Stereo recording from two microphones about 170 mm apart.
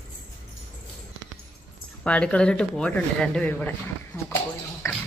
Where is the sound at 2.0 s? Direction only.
5° left (ahead or behind).